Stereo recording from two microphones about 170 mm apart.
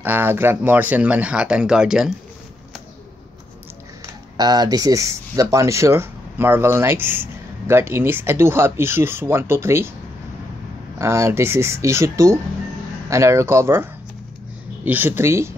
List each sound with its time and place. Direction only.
0.0 s speech: 10° right (ahead or behind)
4.4 s speech: 25° right (ahead or behind)
11.0 s speech: 15° right (ahead or behind)
14.9 s speech: 10° right (ahead or behind)